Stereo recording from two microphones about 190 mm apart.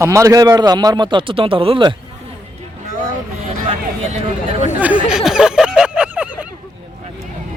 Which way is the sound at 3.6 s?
30° right (ahead or behind).